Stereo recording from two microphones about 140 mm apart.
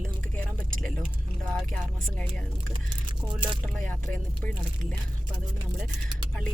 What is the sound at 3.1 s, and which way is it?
Speech, 35° right (ahead or behind).